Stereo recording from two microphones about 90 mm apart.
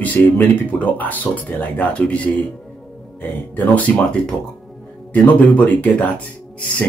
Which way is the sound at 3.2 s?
20° left (ahead or behind).